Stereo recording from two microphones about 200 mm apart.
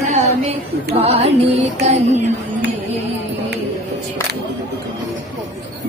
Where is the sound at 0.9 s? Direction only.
30° right (ahead or behind).